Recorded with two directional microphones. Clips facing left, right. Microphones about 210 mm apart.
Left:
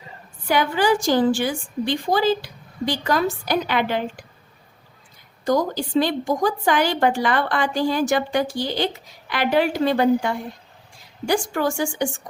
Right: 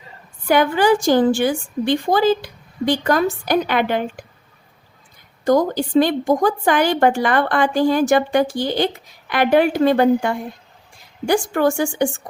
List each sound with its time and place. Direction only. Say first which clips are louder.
0.4 s a woman's voice: right 4 dB; 50° right (ahead or behind)
5.5 s a woman's voice: right 5 dB; 50° right (ahead or behind)